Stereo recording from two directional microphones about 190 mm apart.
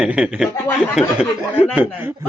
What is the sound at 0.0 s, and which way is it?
A man's voice, 5° right (ahead or behind).